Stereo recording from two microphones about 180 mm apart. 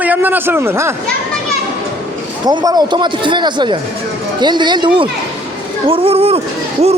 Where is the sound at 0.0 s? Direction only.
10° right (ahead or behind).